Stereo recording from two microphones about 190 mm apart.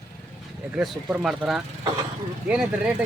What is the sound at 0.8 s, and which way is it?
Speech, centre (ahead or behind).